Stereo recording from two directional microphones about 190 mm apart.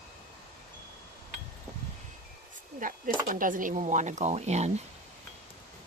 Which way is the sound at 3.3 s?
45° right (ahead or behind).